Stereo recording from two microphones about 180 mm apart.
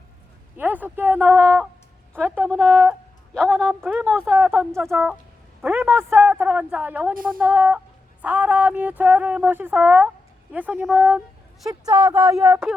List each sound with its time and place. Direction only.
0.5 s speech: 10° right (ahead or behind)
3.3 s a woman's voice: 5° left (ahead or behind)
3.8 s speech: 10° right (ahead or behind)
4.0 s speech: 5° left (ahead or behind)
5.6 s speech: 10° right (ahead or behind)